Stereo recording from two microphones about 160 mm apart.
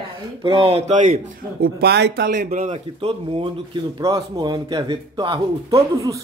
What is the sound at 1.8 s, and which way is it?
Speech, 90° right.